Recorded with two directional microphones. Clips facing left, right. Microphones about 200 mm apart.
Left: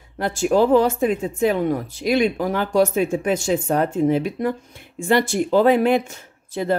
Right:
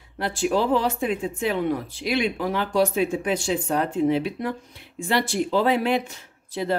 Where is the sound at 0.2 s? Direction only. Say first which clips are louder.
Left 5 dB; 45° left (ahead or behind).